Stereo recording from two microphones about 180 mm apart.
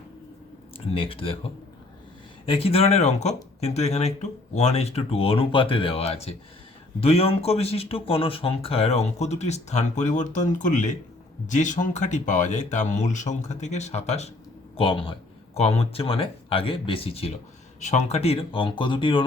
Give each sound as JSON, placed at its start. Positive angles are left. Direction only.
{"t": 0.9, "sound": "speech", "side_deg": 30}
{"t": 2.5, "sound": "speech", "side_deg": 30}